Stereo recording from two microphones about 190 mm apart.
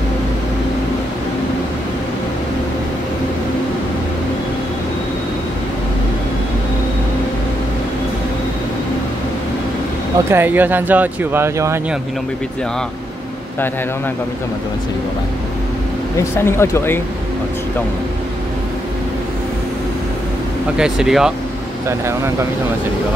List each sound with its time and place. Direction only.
10.3 s speech: 10° right (ahead or behind)
16.2 s speech: 15° left (ahead or behind)
20.7 s speech: 5° right (ahead or behind)
21.8 s speech: 15° right (ahead or behind)